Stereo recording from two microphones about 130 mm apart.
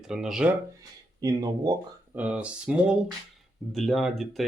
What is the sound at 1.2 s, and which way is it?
Speech, 30° right (ahead or behind).